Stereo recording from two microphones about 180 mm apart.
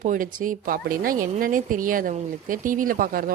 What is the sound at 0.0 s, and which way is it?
A woman's voice, 45° right (ahead or behind).